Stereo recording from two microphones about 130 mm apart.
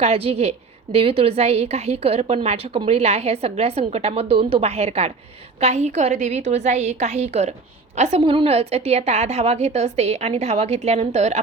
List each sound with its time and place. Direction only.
0.0 s a woman's voice: 50° right (ahead or behind)